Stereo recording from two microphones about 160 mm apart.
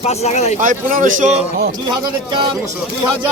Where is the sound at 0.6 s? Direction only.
60° right (ahead or behind).